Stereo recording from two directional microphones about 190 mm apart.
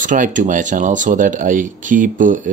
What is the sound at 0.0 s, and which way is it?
Speech, 45° right (ahead or behind).